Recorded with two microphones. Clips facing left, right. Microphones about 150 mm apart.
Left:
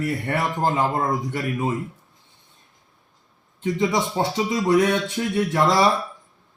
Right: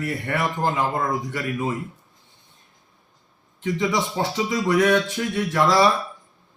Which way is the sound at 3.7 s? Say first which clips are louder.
Left 1 dB; 25° left (ahead or behind).